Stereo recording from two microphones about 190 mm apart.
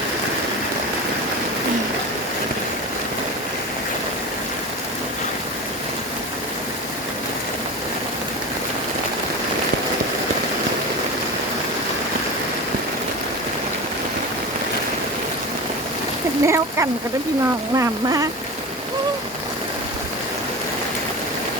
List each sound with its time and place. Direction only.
16.5 s speech: 15° right (ahead or behind)